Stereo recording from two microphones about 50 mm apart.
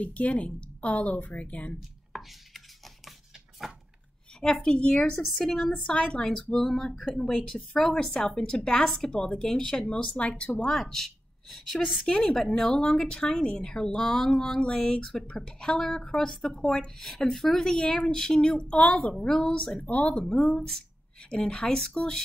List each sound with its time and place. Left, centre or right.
0.0 s a woman's voice: left
4.4 s a woman's voice: centre
5.2 s a woman's voice: centre
5.9 s a woman's voice: left
6.5 s a woman's voice: centre
7.0 s a woman's voice: centre
7.4 s a woman's voice: centre
8.7 s a woman's voice: centre
10.7 s a woman's voice: centre
17.7 s a woman's voice: centre
19.8 s a woman's voice: left